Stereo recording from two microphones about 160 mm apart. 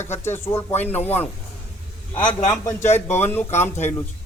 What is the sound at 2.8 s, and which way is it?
Speech, 45° left (ahead or behind).